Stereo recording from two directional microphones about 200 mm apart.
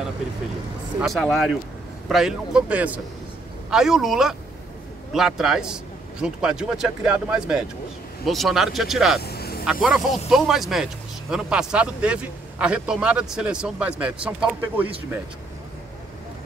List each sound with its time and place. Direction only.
1.0 s speech: centre (ahead or behind)
9.2 s vehicle: 50° left (ahead or behind)
9.7 s speech: centre (ahead or behind)